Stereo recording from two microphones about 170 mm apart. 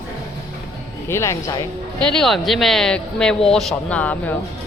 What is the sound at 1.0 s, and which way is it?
Speech, 15° left (ahead or behind).